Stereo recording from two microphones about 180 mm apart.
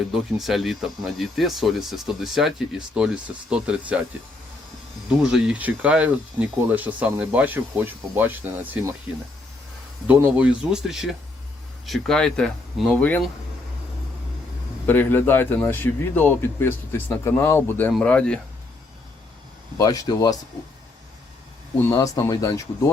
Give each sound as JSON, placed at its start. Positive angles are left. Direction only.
{"t": 0.1, "sound": "speech", "side_deg": 0}
{"t": 5.0, "sound": "speech", "side_deg": -5}
{"t": 10.1, "sound": "a man's voice", "side_deg": -10}
{"t": 14.8, "sound": "a man's voice", "side_deg": 10}
{"t": 19.8, "sound": "speech", "side_deg": 20}
{"t": 21.9, "sound": "speech", "side_deg": 20}